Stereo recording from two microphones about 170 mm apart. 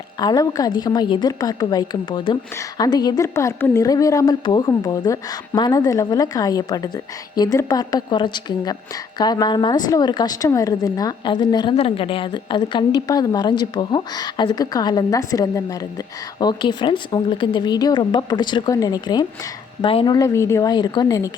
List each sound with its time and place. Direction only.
0.2 s a woman's voice: 20° left (ahead or behind)
20.1 s a woman's voice: 15° left (ahead or behind)